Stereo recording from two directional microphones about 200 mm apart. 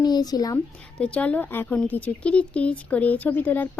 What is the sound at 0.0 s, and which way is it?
Speech, 20° left (ahead or behind).